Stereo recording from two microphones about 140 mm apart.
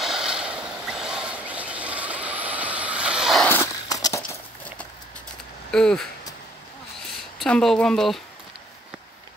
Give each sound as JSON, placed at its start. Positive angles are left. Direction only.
{"t": 0.0, "sound": "vehicle", "side_deg": -5}
{"t": 3.4, "sound": "walk", "side_deg": 15}
{"t": 3.9, "sound": "a sound", "side_deg": 25}
{"t": 4.3, "sound": "walk", "side_deg": 10}
{"t": 5.7, "sound": "speech", "side_deg": 5}
{"t": 7.3, "sound": "speech", "side_deg": 5}